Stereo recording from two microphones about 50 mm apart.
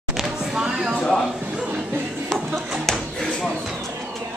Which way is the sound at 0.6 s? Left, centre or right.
Centre.